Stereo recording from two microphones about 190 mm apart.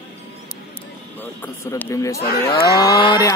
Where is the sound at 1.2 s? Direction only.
10° left (ahead or behind).